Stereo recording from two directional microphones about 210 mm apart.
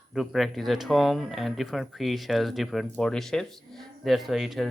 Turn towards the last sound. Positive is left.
turn(degrees=0)  # may be behind; listen again after turning